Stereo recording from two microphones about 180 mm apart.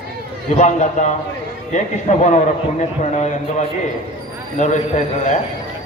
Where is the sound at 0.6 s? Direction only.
40° left (ahead or behind).